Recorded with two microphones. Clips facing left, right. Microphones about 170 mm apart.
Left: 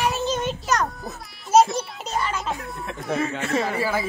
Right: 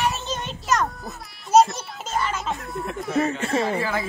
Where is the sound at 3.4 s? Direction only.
25° right (ahead or behind).